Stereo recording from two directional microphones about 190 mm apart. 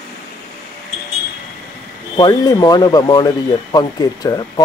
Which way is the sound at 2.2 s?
20° left (ahead or behind).